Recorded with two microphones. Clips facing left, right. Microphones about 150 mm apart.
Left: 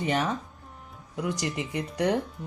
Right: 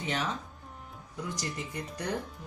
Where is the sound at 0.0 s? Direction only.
55° left (ahead or behind).